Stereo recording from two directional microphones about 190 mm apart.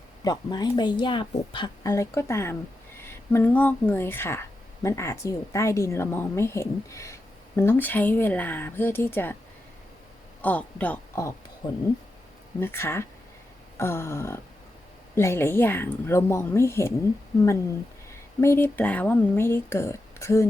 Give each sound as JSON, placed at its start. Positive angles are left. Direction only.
{"t": 0.3, "sound": "a woman's voice", "side_deg": 20}
{"t": 10.4, "sound": "speech", "side_deg": 5}
{"t": 11.6, "sound": "a woman's voice", "side_deg": 25}
{"t": 12.5, "sound": "a woman's voice", "side_deg": 10}
{"t": 18.1, "sound": "a woman's voice", "side_deg": 15}